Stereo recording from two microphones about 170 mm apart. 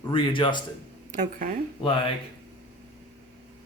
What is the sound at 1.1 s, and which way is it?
Speech, 50° right (ahead or behind).